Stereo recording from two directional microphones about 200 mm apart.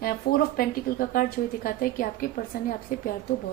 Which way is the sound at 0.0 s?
50° left (ahead or behind).